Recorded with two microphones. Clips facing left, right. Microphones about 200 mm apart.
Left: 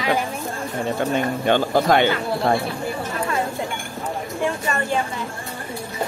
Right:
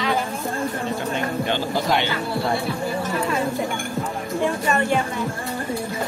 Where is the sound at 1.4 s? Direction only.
55° left (ahead or behind).